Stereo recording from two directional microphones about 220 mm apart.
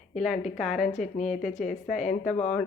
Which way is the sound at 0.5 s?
Centre (ahead or behind).